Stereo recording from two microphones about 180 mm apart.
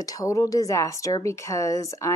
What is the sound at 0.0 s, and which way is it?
A woman's voice, 20° left (ahead or behind).